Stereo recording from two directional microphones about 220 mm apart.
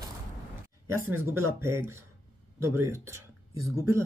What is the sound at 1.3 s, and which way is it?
Speech, 10° right (ahead or behind).